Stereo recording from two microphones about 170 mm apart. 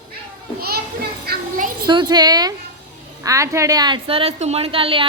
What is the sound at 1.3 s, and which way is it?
Children playing, 55° right (ahead or behind).